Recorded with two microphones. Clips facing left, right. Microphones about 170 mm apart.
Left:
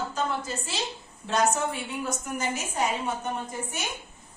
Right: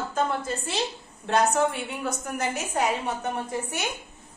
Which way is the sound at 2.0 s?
60° right (ahead or behind).